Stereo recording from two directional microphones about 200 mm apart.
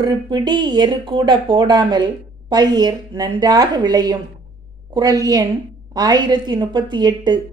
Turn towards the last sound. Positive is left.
turn(degrees=-20)  # may be behind; listen again after turning